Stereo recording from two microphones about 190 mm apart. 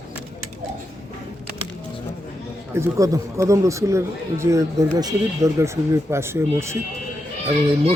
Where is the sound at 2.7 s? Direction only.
15° right (ahead or behind).